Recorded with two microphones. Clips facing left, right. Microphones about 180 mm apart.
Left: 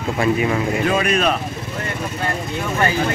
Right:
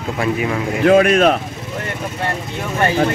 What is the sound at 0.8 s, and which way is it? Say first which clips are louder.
Speech: right 11 dB; 75° right (ahead or behind).